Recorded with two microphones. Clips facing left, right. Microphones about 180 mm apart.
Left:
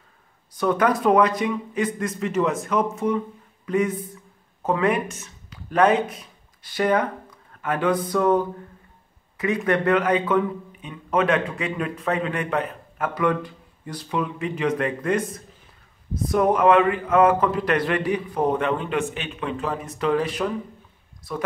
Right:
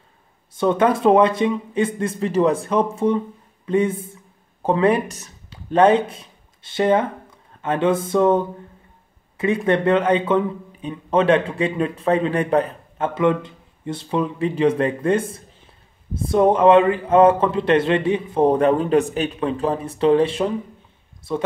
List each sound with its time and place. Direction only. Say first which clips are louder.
0.6 s a man's voice: right 3 dB; 25° right (ahead or behind)